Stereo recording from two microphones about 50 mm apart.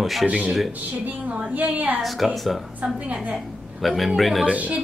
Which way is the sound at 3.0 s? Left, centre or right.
Right.